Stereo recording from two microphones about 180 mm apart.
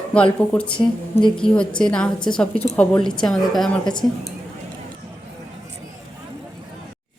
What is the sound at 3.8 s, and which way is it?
Speech, 25° left (ahead or behind).